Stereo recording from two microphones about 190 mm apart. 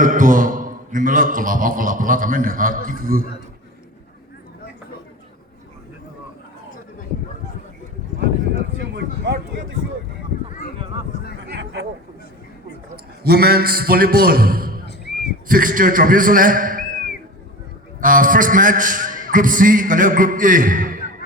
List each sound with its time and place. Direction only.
0.0 s a man's voice: 45° right (ahead or behind)
9.0 s a sound: 65° right (ahead or behind)
11.4 s chatter: 65° right (ahead or behind)
13.2 s a man's voice: 55° right (ahead or behind)
18.0 s a man's voice: 45° right (ahead or behind)